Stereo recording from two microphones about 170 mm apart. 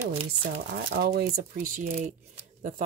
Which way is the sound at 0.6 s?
65° right (ahead or behind).